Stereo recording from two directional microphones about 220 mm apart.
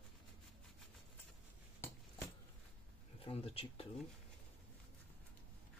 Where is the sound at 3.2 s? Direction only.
25° left (ahead or behind).